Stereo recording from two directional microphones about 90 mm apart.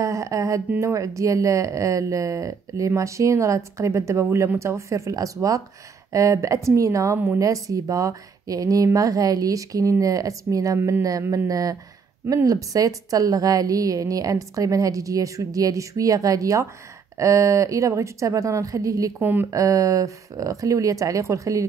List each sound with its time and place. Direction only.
0.0 s speech: 35° right (ahead or behind)